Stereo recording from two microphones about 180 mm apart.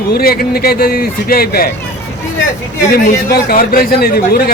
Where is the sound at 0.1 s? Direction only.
55° left (ahead or behind).